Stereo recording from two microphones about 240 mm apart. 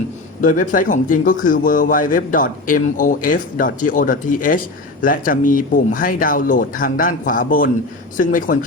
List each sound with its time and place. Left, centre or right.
0.4 s a man's voice: left